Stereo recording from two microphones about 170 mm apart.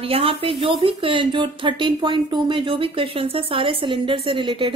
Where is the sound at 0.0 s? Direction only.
35° right (ahead or behind).